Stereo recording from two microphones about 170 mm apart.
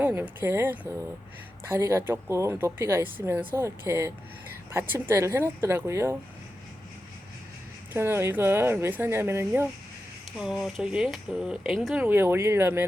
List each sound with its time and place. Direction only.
0.0 s speech: 10° right (ahead or behind)
7.9 s speech: 15° right (ahead or behind)
10.3 s speech: centre (ahead or behind)
12.0 s speech: 10° right (ahead or behind)